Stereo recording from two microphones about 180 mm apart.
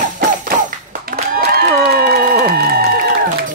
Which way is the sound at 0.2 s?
50° right (ahead or behind).